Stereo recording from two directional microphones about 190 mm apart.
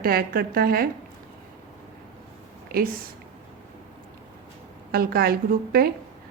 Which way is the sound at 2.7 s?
50° right (ahead or behind).